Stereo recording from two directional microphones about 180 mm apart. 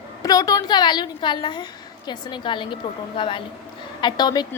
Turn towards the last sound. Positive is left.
turn(degrees=20)  # may be behind; listen again after turning